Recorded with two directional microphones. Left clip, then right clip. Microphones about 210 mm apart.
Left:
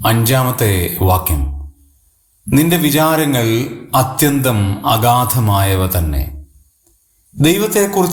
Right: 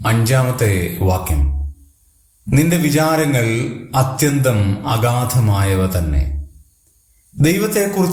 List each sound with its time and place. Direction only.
0.0 s a man's voice: 25° left (ahead or behind)
2.5 s a man's voice: 25° left (ahead or behind)
7.3 s a man's voice: 20° left (ahead or behind)